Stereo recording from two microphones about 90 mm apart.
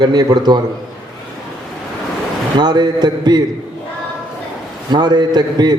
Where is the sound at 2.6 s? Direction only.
50° right (ahead or behind).